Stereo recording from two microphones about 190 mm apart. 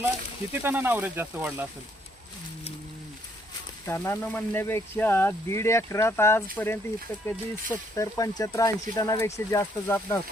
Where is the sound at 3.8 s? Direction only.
15° left (ahead or behind).